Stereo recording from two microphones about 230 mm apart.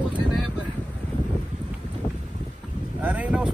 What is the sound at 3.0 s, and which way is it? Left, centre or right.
Speech, centre.